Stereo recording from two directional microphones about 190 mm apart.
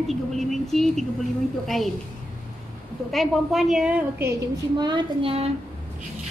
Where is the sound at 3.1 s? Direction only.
Centre (ahead or behind).